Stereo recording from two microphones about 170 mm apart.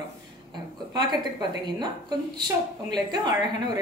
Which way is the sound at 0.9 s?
25° right (ahead or behind).